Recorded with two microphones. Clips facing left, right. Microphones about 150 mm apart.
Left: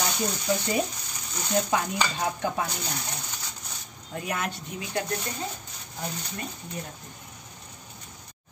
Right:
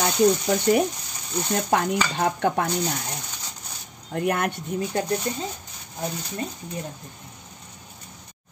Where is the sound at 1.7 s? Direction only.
60° right (ahead or behind).